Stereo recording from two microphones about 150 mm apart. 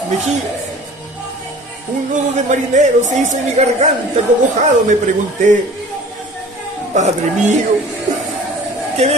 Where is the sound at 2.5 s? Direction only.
55° right (ahead or behind).